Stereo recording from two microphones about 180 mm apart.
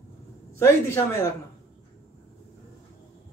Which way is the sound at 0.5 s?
15° left (ahead or behind).